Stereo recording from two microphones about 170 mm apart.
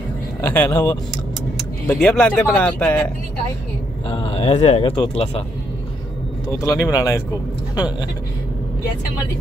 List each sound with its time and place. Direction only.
0.4 s speech: 10° left (ahead or behind)
4.1 s speech: 35° left (ahead or behind)
6.6 s speech: 20° left (ahead or behind)